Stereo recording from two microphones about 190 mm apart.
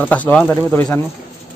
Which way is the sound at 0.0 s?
5° left (ahead or behind).